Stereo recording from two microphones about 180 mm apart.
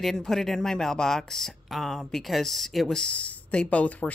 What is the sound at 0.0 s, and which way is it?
Speech, centre (ahead or behind).